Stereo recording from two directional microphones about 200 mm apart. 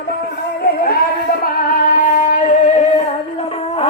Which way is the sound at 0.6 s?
50° left (ahead or behind).